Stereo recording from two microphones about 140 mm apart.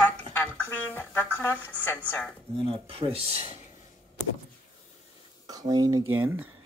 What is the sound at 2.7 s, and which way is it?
Speech, 40° right (ahead or behind).